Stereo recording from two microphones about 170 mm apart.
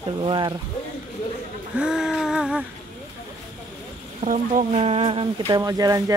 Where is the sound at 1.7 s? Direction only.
5° right (ahead or behind).